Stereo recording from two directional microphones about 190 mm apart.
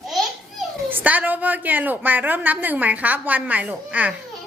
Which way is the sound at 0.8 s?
10° right (ahead or behind).